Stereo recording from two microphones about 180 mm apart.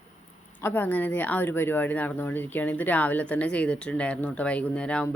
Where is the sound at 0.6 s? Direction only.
10° left (ahead or behind).